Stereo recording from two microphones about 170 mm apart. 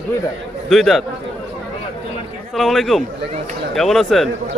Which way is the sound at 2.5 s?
Centre (ahead or behind).